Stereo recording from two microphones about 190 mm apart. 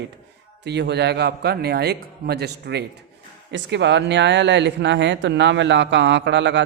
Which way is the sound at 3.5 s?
70° right (ahead or behind).